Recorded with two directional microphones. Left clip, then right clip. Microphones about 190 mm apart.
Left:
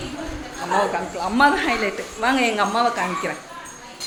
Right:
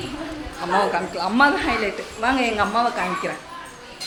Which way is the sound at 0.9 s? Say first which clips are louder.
Right 1 dB; 15° right (ahead or behind).